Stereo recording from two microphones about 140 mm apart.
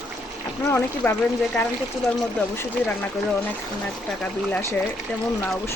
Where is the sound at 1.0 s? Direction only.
10° left (ahead or behind).